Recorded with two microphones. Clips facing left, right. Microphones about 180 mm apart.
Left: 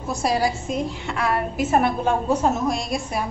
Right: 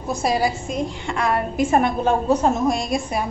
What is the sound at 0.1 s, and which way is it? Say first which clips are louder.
A woman's voice: right 1 dB; centre (ahead or behind).